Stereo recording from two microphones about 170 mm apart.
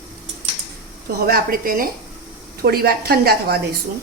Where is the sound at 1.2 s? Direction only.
60° right (ahead or behind).